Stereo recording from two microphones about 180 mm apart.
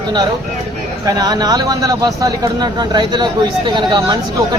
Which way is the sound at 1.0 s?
20° right (ahead or behind).